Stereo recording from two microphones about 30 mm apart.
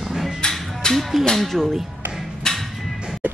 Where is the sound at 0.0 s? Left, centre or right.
Centre.